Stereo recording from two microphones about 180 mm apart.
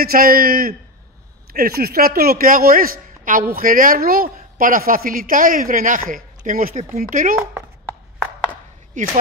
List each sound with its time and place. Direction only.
0.0 s a man's voice: 55° right (ahead or behind)
9.0 s a man's voice: 45° right (ahead or behind)